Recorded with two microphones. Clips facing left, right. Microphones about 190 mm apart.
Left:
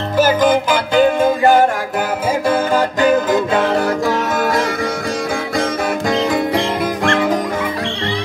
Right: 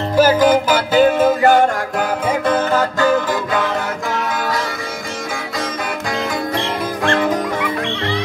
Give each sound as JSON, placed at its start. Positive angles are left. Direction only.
{"t": 0.2, "sound": "music", "side_deg": -10}
{"t": 2.4, "sound": "music", "side_deg": 10}